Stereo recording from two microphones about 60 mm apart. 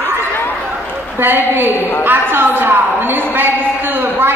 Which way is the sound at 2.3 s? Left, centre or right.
Right.